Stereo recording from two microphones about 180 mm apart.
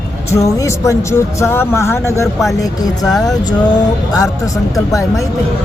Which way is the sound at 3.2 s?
20° left (ahead or behind).